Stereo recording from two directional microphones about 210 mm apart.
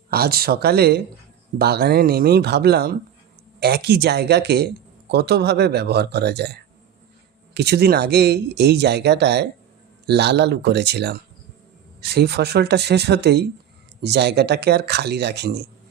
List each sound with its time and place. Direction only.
0.1 s speech: 45° right (ahead or behind)